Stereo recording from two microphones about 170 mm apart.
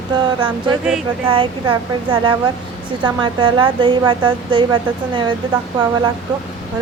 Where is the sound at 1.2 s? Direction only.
30° right (ahead or behind).